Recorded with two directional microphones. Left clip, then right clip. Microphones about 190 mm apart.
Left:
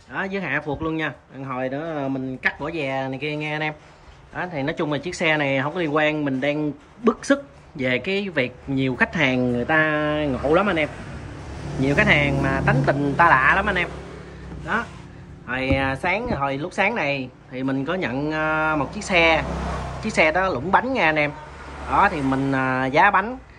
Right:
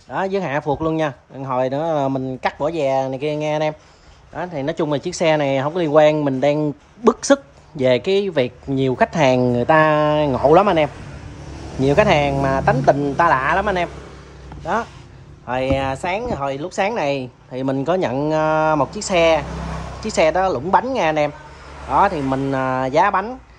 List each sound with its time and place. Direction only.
0.1 s speech: 20° right (ahead or behind)
2.4 s a woman's voice: 15° right (ahead or behind)
9.4 s speech: 65° left (ahead or behind)
9.7 s a woman's voice: 25° right (ahead or behind)
15.4 s a woman's voice: 15° right (ahead or behind)